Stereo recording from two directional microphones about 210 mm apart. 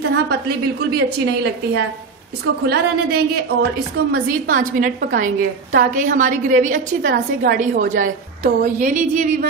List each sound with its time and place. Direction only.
0.1 s a woman's voice: 50° right (ahead or behind)
2.6 s a woman's voice: 50° right (ahead or behind)